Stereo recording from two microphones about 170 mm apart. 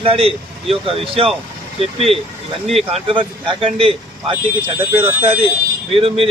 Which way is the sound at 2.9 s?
30° right (ahead or behind).